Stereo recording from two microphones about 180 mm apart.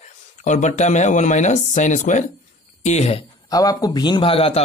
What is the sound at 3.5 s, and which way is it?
Speech, 20° left (ahead or behind).